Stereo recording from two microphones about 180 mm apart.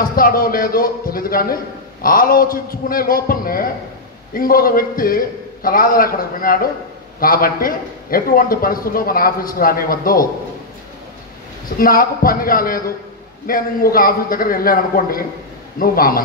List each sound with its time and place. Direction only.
0.0 s a man's voice: 50° left (ahead or behind)
11.8 s a man's voice: 50° left (ahead or behind)